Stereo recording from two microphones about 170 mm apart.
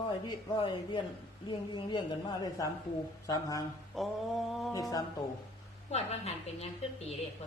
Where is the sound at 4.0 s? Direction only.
Centre (ahead or behind).